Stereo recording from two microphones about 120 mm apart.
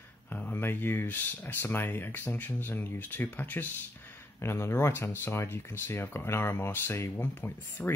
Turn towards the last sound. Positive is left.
turn(degrees=15)  # may be behind; listen again after turning